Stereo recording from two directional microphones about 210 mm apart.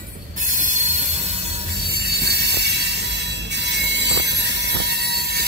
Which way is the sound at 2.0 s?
50° right (ahead or behind).